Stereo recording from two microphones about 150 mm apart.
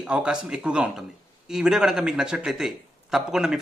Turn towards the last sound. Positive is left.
turn(degrees=-5)  # may be behind; listen again after turning